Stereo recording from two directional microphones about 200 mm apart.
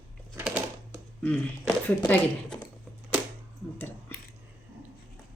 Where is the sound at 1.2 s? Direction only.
5° left (ahead or behind).